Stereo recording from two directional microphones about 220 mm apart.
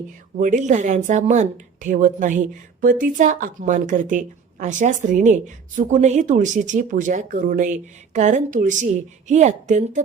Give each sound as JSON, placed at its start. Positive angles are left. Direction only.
{"t": 0.3, "sound": "a woman's voice", "side_deg": -35}